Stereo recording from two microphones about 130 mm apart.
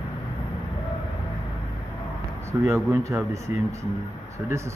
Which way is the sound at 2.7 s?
25° right (ahead or behind).